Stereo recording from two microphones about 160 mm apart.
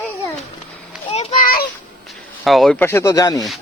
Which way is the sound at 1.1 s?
40° left (ahead or behind).